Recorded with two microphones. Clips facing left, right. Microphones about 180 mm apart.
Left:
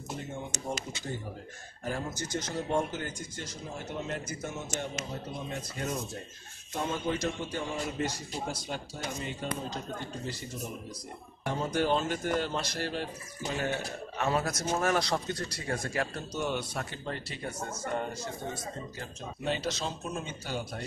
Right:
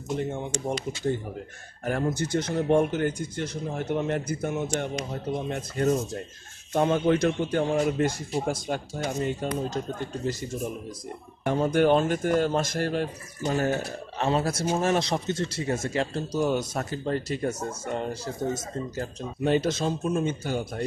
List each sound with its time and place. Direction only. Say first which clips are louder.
1.9 s a man's voice: right 8 dB; 65° right (ahead or behind)
6.7 s a man's voice: right 10 dB; 65° right (ahead or behind); by 9.8 s 45° right (ahead or behind)
11.4 s a man's voice: right 8 dB; 55° right (ahead or behind)
14.1 s speech: right 5 dB; 30° right (ahead or behind)
17.6 s a man's voice: right 4 dB; 30° right (ahead or behind); by 20.6 s 50° right (ahead or behind)